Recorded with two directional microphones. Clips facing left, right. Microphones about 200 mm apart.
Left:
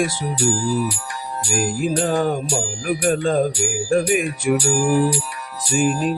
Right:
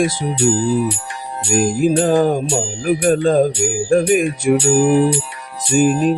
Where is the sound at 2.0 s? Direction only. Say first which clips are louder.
Right 5 dB; 35° right (ahead or behind).